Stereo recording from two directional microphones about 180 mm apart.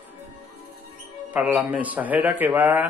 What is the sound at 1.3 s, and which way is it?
Speech, 5° right (ahead or behind).